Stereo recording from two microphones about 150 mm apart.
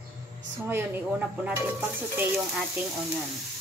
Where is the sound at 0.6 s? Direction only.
15° right (ahead or behind).